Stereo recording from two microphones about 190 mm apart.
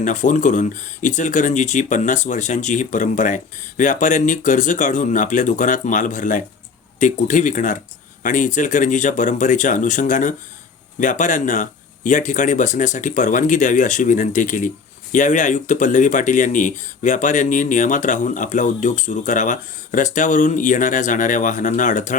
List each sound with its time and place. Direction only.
0.0 s speech: 40° left (ahead or behind)